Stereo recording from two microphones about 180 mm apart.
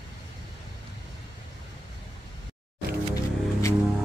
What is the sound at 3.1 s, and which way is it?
Music, 15° left (ahead or behind).